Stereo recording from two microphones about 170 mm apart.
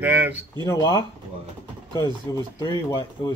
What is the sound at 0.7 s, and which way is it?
Speech, 25° left (ahead or behind).